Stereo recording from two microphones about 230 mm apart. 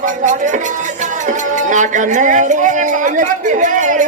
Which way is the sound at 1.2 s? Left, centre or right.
Right.